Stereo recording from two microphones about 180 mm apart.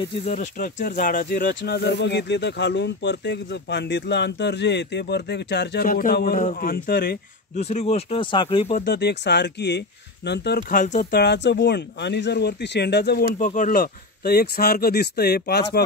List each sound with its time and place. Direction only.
0.2 s speech: 35° left (ahead or behind)
0.6 s speech: 50° left (ahead or behind)
1.6 s speech: 70° left (ahead or behind)
7.5 s speech: 40° left (ahead or behind)
8.7 s speech: 60° left (ahead or behind)
10.8 s speech: 45° left (ahead or behind); by 13.4 s 65° left (ahead or behind)
13.4 s speech: 45° left (ahead or behind)